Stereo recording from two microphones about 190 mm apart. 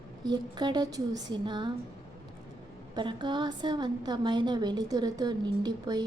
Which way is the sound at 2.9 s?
25° right (ahead or behind).